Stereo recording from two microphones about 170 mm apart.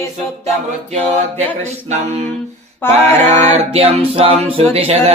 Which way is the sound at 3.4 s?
40° right (ahead or behind).